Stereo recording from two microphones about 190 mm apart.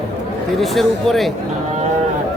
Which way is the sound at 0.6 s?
Centre (ahead or behind).